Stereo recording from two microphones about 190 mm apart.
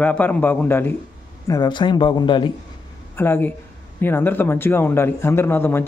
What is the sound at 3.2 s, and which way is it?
A man's voice, 10° left (ahead or behind).